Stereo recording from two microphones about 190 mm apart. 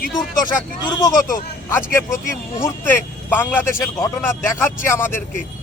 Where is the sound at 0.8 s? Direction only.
20° left (ahead or behind).